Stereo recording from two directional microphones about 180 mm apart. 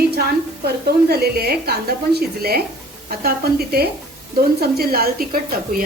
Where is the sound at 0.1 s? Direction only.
60° right (ahead or behind).